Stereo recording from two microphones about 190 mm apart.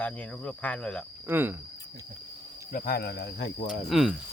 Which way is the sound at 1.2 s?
10° right (ahead or behind).